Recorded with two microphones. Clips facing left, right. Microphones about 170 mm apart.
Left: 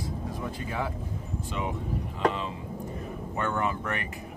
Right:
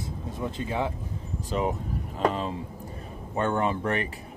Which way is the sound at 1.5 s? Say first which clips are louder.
Right 5 dB; 40° right (ahead or behind).